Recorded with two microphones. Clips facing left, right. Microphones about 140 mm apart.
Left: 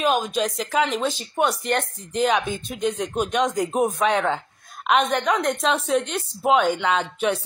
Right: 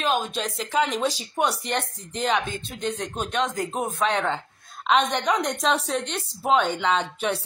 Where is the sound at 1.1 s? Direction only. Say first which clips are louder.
Left 2 dB; centre (ahead or behind).